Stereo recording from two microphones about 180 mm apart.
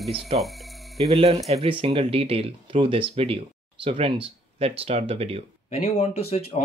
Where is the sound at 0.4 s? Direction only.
Centre (ahead or behind).